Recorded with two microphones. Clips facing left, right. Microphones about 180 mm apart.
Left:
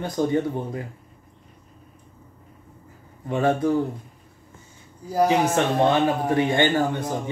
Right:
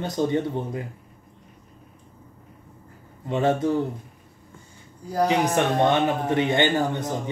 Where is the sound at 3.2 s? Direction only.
25° right (ahead or behind).